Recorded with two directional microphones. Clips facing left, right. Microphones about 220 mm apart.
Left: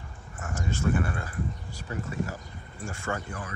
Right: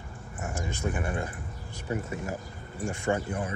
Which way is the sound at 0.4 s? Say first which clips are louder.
Left 1 dB; 15° right (ahead or behind).